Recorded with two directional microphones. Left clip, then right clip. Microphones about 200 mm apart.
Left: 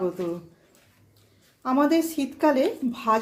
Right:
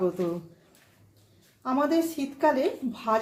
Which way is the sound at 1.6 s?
30° left (ahead or behind).